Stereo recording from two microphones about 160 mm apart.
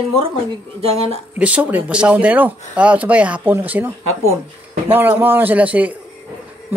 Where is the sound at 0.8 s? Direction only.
40° right (ahead or behind).